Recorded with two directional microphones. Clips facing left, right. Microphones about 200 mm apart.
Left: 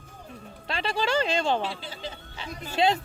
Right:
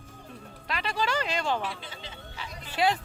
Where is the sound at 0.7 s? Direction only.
30° left (ahead or behind).